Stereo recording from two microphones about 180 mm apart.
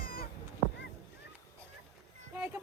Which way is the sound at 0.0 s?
55° left (ahead or behind).